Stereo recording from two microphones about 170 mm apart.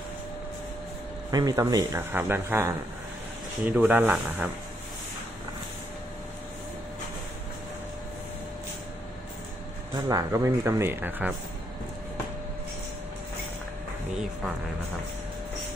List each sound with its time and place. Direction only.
1.3 s speech: 20° right (ahead or behind)
9.9 s speech: 20° right (ahead or behind)